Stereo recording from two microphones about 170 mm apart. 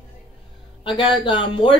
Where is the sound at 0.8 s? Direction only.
30° left (ahead or behind).